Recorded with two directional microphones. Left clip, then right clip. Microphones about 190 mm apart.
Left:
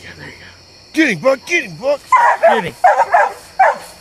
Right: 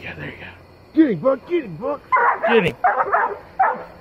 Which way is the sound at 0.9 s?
65° left (ahead or behind).